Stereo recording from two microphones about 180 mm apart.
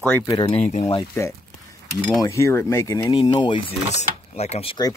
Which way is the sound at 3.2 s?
25° left (ahead or behind).